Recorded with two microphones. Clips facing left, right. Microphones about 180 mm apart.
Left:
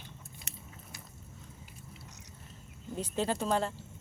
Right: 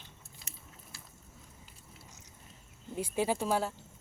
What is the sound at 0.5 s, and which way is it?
Biting, 70° left (ahead or behind).